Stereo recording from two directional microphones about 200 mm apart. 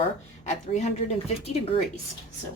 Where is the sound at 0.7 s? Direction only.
35° left (ahead or behind).